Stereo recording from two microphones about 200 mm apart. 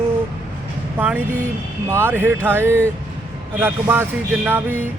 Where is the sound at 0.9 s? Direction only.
10° right (ahead or behind).